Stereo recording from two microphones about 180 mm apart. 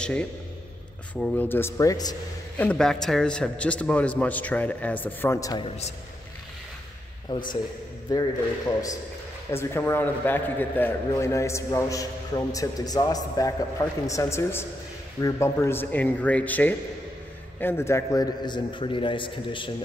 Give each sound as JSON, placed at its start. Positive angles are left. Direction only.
{"t": 0.0, "sound": "a man's voice", "side_deg": 5}
{"t": 2.6, "sound": "a man's voice", "side_deg": 5}
{"t": 7.3, "sound": "a man's voice", "side_deg": 25}